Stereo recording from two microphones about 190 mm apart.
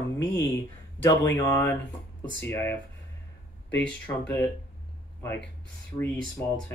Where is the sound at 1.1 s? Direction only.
65° left (ahead or behind).